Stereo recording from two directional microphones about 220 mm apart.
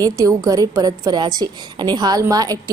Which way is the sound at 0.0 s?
15° right (ahead or behind).